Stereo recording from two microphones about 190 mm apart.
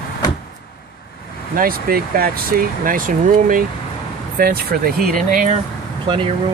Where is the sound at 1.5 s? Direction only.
50° right (ahead or behind).